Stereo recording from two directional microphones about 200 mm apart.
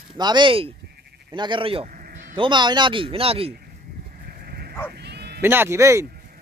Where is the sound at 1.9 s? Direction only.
45° right (ahead or behind).